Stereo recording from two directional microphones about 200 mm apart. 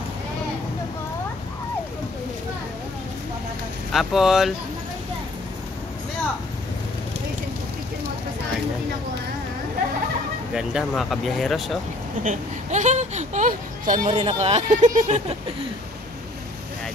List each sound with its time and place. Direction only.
3.9 s speech: centre (ahead or behind)
10.5 s speech: centre (ahead or behind)
12.2 s speech: 35° right (ahead or behind)
14.0 s speech: 30° right (ahead or behind)